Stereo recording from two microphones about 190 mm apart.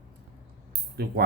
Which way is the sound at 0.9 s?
55° right (ahead or behind).